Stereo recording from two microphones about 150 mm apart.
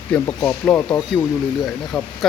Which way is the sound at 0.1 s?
10° left (ahead or behind).